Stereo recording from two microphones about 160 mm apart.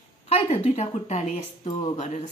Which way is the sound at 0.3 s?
45° left (ahead or behind).